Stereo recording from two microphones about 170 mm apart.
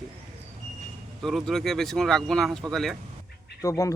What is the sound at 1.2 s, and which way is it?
Speech, centre (ahead or behind).